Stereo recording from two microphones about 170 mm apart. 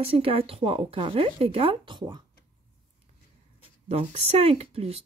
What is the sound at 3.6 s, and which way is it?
Speech, 35° right (ahead or behind).